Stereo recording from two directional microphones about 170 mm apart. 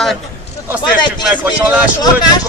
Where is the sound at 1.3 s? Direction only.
10° right (ahead or behind).